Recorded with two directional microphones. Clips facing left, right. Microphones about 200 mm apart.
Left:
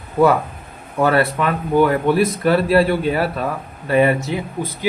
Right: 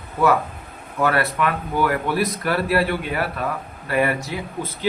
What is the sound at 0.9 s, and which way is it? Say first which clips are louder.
A man's voice: left 4 dB; 30° left (ahead or behind).